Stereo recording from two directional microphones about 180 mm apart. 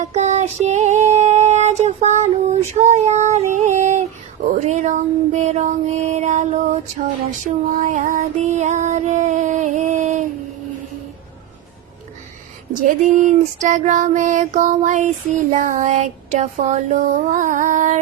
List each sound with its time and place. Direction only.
0.0 s female singing: 40° right (ahead or behind)
4.5 s child singing: 40° right (ahead or behind)
12.8 s child singing: 45° right (ahead or behind)